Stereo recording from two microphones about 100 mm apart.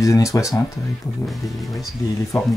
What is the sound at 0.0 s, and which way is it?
Speech, 35° left (ahead or behind).